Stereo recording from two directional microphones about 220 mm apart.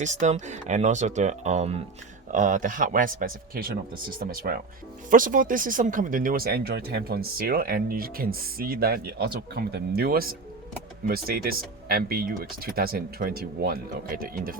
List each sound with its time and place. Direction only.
0.0 s a man's voice: 30° right (ahead or behind)